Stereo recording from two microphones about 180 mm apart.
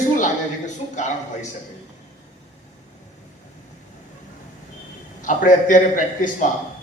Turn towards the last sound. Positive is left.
turn(degrees=45)  # may be behind; listen again after turning